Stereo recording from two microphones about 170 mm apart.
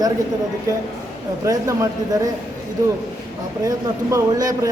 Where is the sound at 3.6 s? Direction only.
20° right (ahead or behind).